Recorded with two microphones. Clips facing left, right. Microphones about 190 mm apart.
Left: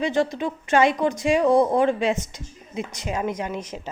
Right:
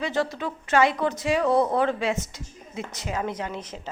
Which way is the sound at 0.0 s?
15° left (ahead or behind).